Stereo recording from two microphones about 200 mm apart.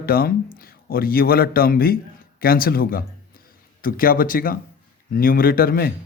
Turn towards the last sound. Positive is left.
turn(degrees=50)  # may be behind; listen again after turning